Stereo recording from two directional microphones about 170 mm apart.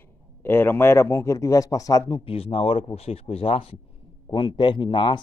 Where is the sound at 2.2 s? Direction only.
35° left (ahead or behind).